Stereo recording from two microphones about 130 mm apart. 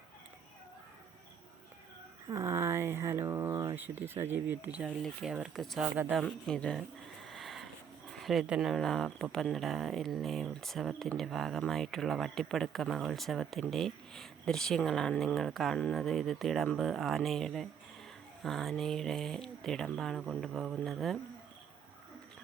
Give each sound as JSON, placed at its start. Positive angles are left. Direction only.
{"t": 2.3, "sound": "a sound", "side_deg": -20}
{"t": 5.3, "sound": "speech", "side_deg": -5}
{"t": 5.8, "sound": "speech", "side_deg": -10}
{"t": 6.2, "sound": "speech", "side_deg": 5}
{"t": 7.3, "sound": "a sound", "side_deg": 0}
{"t": 8.1, "sound": "speech", "side_deg": 0}